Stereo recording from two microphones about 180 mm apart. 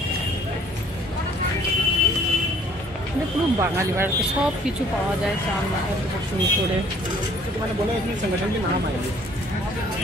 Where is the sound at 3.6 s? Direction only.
15° right (ahead or behind).